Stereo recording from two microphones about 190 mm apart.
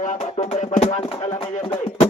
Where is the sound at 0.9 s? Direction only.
25° left (ahead or behind).